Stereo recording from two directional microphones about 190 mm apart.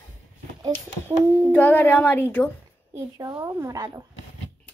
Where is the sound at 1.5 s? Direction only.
10° left (ahead or behind).